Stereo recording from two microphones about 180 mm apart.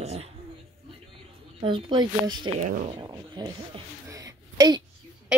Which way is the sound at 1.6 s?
25° right (ahead or behind).